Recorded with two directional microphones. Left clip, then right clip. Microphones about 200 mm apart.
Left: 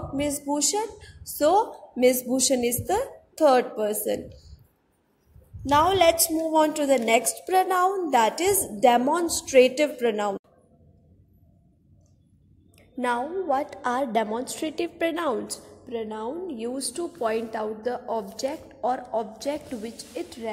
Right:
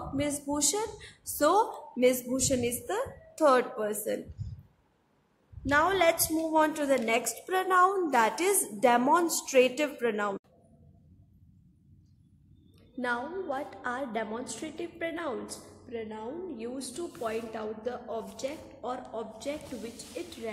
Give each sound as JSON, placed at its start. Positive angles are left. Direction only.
{"t": 0.2, "sound": "a woman's voice", "side_deg": 10}
{"t": 5.7, "sound": "a woman's voice", "side_deg": 15}
{"t": 13.0, "sound": "a woman's voice", "side_deg": 20}